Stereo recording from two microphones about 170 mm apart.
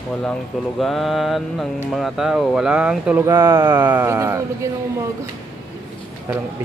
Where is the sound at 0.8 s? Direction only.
Centre (ahead or behind); by 4.7 s 15° right (ahead or behind).